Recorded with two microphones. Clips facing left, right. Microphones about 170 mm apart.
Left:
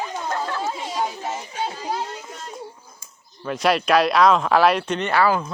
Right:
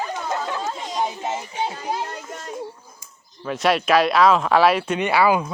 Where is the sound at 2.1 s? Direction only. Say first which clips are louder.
Right 2 dB; 50° right (ahead or behind).